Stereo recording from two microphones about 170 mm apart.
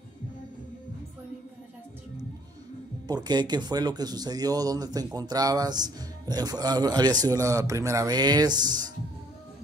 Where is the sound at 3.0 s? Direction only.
25° right (ahead or behind).